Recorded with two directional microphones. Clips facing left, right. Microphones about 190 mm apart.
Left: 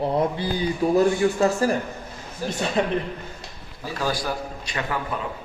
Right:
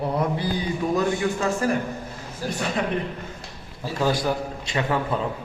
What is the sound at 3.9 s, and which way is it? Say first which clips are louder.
A man's voice: right 4 dB; 20° right (ahead or behind).